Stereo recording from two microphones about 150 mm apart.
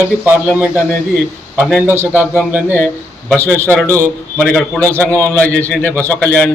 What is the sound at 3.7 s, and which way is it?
A man's voice, 10° left (ahead or behind).